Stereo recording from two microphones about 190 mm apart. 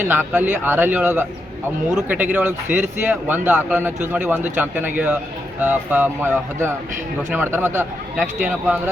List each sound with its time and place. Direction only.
0.0 s a man's voice: 10° right (ahead or behind)